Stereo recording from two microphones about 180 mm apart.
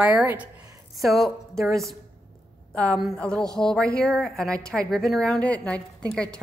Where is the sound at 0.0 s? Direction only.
10° right (ahead or behind).